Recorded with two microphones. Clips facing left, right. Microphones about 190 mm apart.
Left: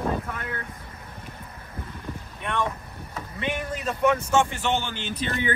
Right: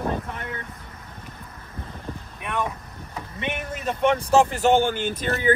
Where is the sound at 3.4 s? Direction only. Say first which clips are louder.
Left 1 dB; 20° right (ahead or behind); by 5.2 s 50° right (ahead or behind).